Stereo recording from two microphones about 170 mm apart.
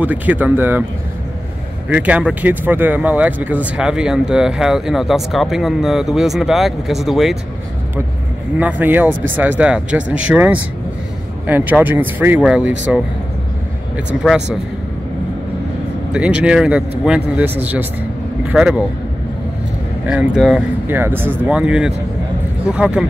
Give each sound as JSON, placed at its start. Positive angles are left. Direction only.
{"t": 0.0, "sound": "speech", "side_deg": -10}
{"t": 1.9, "sound": "speech", "side_deg": -10}
{"t": 8.5, "sound": "speech", "side_deg": -10}
{"t": 14.2, "sound": "speech", "side_deg": 0}
{"t": 16.1, "sound": "speech", "side_deg": -5}
{"t": 20.1, "sound": "speech", "side_deg": -5}